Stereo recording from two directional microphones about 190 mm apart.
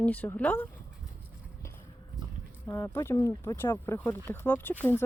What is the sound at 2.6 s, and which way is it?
Speech, 15° left (ahead or behind).